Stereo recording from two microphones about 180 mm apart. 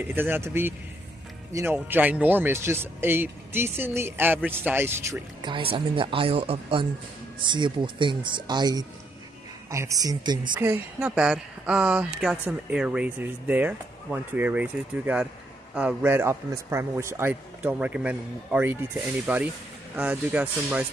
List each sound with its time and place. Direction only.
0.0 s speech: 10° right (ahead or behind)
5.4 s speech: 30° right (ahead or behind)
10.6 s speech: 10° right (ahead or behind)